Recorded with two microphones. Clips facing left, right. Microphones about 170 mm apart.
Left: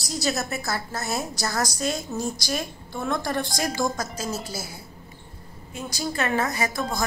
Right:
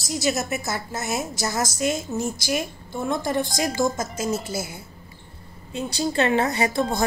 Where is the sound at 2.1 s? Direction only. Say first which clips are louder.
Right 2 dB; 15° left (ahead or behind).